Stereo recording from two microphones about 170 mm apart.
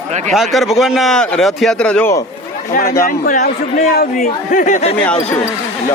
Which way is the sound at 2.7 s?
60° left (ahead or behind).